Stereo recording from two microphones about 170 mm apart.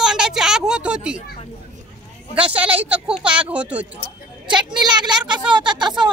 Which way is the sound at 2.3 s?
10° right (ahead or behind).